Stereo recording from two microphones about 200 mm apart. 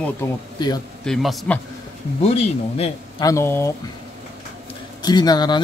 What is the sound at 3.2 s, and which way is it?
Speech, 15° left (ahead or behind).